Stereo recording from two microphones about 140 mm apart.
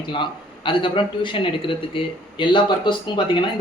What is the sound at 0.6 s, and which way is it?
Speech, 35° left (ahead or behind).